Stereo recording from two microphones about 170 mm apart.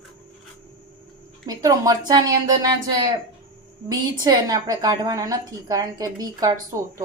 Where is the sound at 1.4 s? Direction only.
20° right (ahead or behind).